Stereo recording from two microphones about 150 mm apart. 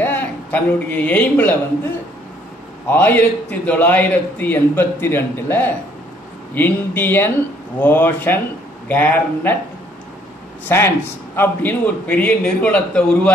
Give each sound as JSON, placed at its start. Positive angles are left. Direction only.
{"t": 0.0, "sound": "a man's voice", "side_deg": 10}
{"t": 2.9, "sound": "a man's voice", "side_deg": 10}
{"t": 10.7, "sound": "a man's voice", "side_deg": 15}